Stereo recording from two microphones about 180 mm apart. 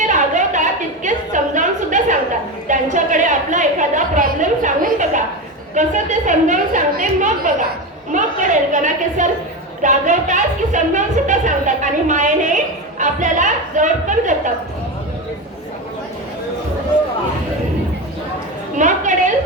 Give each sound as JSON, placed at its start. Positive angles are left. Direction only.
{"t": 0.0, "sound": "a sound", "side_deg": -45}
{"t": 5.7, "sound": "a woman's voice", "side_deg": -45}
{"t": 18.8, "sound": "a woman's voice", "side_deg": -45}